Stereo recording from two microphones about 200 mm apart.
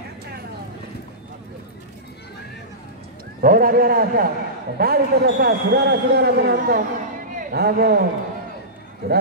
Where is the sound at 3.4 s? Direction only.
45° right (ahead or behind).